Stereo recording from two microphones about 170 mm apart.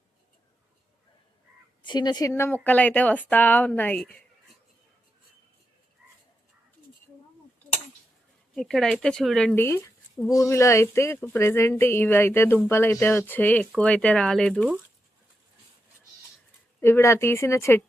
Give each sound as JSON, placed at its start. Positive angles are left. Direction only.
{"t": 1.8, "sound": "speech", "side_deg": 25}
{"t": 8.5, "sound": "speech", "side_deg": 5}
{"t": 9.6, "sound": "speech", "side_deg": 15}
{"t": 16.8, "sound": "speech", "side_deg": 15}